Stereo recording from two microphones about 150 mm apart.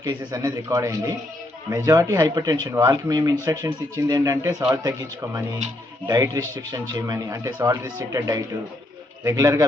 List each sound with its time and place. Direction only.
0.0 s speech: 25° right (ahead or behind)